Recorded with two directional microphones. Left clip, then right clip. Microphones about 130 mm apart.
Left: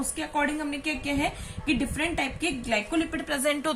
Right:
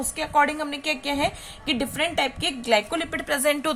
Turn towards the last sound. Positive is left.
turn(degrees=-65)  # may be behind; listen again after turning